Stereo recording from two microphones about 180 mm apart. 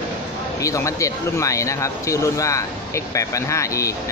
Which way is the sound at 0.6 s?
15° left (ahead or behind).